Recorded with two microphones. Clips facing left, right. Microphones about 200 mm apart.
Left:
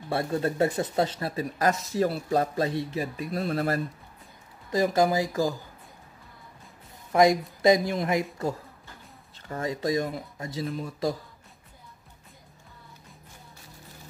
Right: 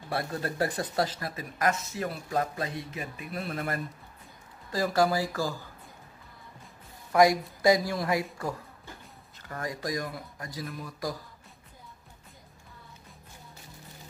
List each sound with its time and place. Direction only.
0.1 s speech: 25° left (ahead or behind)
4.6 s speech: 20° left (ahead or behind)
7.1 s speech: 25° left (ahead or behind)
9.5 s speech: 25° left (ahead or behind)